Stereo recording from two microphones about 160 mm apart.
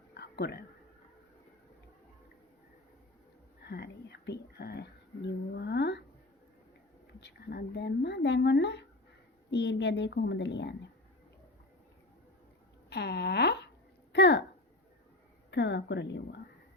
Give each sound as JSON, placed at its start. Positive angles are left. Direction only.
{"t": 0.1, "sound": "a sound", "side_deg": 90}
{"t": 3.6, "sound": "speech", "side_deg": 90}
{"t": 7.2, "sound": "a woman's voice", "side_deg": 90}
{"t": 12.9, "sound": "speech", "side_deg": 90}
{"t": 15.4, "sound": "a woman's voice", "side_deg": 90}